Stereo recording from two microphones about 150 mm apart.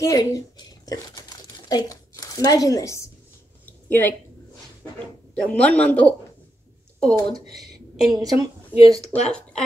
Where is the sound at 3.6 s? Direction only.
10° left (ahead or behind).